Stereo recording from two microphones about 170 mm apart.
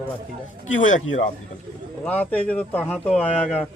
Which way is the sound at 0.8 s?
45° left (ahead or behind).